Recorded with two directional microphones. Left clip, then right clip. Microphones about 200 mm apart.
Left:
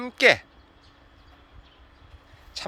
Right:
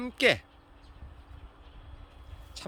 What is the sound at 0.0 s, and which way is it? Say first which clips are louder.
Speech: left 6 dB; 5° right (ahead or behind).